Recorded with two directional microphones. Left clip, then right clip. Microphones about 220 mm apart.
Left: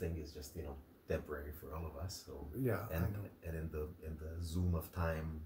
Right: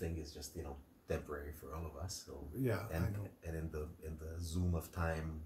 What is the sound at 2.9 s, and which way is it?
Speech, 15° right (ahead or behind).